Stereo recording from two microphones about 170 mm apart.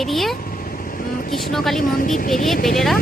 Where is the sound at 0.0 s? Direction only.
Centre (ahead or behind).